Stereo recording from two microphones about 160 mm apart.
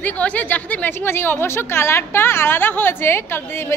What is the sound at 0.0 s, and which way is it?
A woman's voice, 10° left (ahead or behind).